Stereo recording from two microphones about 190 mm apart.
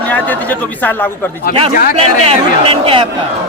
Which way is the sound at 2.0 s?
30° right (ahead or behind).